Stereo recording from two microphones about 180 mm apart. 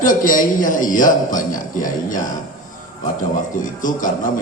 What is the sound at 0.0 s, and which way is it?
A man's voice, 50° left (ahead or behind).